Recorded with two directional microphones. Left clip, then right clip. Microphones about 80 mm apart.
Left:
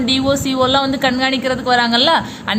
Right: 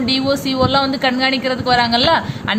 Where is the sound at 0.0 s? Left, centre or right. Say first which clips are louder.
Left 1 dB; left.